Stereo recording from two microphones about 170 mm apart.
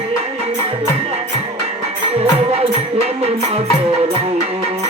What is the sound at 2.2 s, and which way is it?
Music, 35° right (ahead or behind).